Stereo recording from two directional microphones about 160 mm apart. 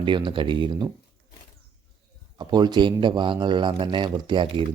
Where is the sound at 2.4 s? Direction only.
25° right (ahead or behind).